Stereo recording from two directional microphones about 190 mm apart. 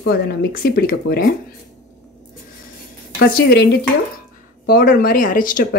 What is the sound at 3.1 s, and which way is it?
Speech, 55° left (ahead or behind).